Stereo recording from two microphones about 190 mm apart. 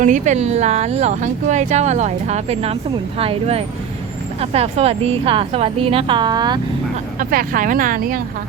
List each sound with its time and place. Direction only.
0.0 s a woman's voice: 40° right (ahead or behind); by 6.6 s 20° right (ahead or behind)
7.2 s speech: 45° right (ahead or behind)